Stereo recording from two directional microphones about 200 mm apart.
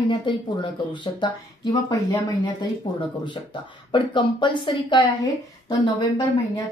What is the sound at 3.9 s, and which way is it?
Speech, 25° left (ahead or behind).